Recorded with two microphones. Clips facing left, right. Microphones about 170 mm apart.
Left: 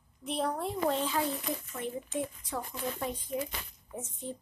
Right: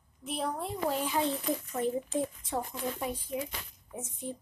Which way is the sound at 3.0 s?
10° right (ahead or behind).